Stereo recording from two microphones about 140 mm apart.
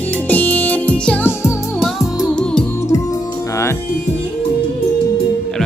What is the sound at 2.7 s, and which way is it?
Music, 20° left (ahead or behind).